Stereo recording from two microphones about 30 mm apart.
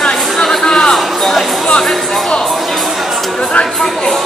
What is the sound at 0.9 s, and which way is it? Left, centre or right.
Speech, centre.